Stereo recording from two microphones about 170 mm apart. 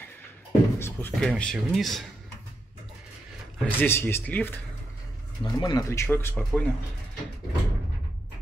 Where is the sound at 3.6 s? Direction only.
10° left (ahead or behind).